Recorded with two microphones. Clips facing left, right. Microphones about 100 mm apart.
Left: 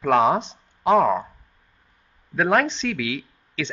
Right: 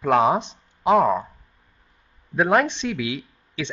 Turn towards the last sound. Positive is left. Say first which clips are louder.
# left 1 dB
turn(degrees=-15)  # may be behind; listen again after turning